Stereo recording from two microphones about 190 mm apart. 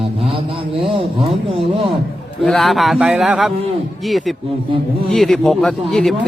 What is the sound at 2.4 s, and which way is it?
Speech, centre (ahead or behind).